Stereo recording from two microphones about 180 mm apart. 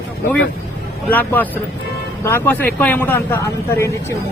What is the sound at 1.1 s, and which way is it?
Speech, 10° left (ahead or behind).